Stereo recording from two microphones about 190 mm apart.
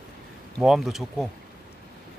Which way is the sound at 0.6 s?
Centre (ahead or behind).